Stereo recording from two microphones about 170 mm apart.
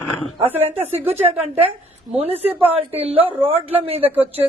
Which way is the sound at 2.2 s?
35° right (ahead or behind).